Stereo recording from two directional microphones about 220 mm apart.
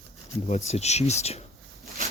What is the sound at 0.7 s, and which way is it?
Speech, 30° left (ahead or behind).